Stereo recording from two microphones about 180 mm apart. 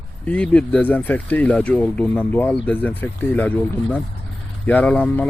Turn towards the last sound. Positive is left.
turn(degrees=10)  # may be behind; listen again after turning